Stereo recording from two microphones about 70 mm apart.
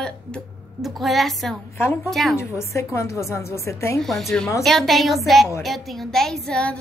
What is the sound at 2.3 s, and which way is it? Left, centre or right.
A woman's voice, left.